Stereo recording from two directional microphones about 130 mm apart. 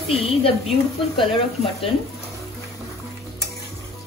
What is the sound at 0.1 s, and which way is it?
Speech, 50° left (ahead or behind).